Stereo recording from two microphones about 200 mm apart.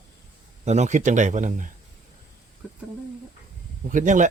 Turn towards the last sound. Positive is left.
turn(degrees=-40)  # may be behind; listen again after turning